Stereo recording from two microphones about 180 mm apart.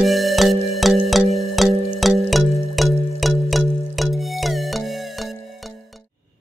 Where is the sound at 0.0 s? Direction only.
Centre (ahead or behind).